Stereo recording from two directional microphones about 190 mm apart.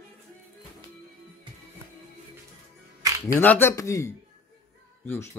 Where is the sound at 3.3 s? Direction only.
10° left (ahead or behind).